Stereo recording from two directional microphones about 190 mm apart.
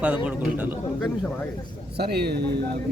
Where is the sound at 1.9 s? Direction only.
60° right (ahead or behind).